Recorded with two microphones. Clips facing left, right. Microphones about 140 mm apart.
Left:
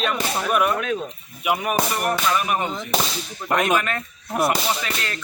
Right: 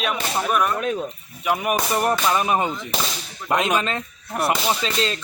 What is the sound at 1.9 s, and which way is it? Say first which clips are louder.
Speech: right 2 dB; 25° right (ahead or behind).